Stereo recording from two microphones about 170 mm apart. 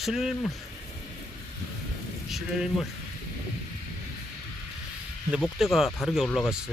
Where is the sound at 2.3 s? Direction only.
Centre (ahead or behind).